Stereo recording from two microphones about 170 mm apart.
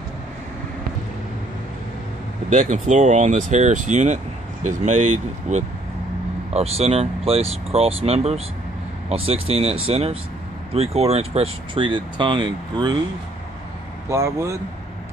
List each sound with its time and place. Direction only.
2.5 s speech: 45° right (ahead or behind); by 12.9 s 25° right (ahead or behind)
14.0 s speech: 15° right (ahead or behind)